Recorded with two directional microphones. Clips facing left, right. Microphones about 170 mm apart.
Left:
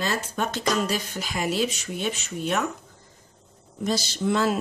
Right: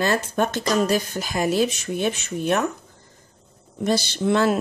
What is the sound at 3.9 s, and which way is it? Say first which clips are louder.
Speech: right 4 dB; 65° right (ahead or behind).